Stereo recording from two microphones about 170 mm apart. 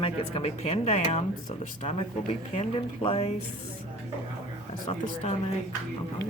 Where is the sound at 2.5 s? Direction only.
35° left (ahead or behind).